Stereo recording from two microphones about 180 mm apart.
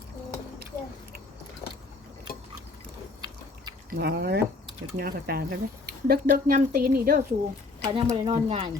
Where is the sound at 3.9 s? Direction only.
60° right (ahead or behind).